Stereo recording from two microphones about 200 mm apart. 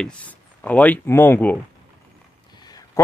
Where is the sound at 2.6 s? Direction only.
20° left (ahead or behind).